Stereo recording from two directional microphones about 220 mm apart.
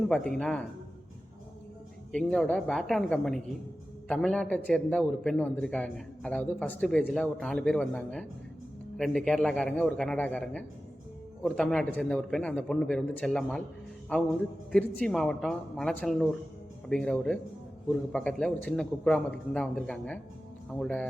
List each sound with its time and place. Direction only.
0.1 s a man's voice: 5° left (ahead or behind)
2.1 s a man's voice: 5° left (ahead or behind)